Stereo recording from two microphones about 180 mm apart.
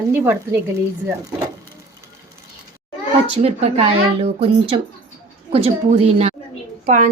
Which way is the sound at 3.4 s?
35° right (ahead or behind).